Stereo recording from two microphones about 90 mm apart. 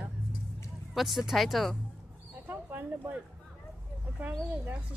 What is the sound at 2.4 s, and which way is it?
Speech, 20° right (ahead or behind).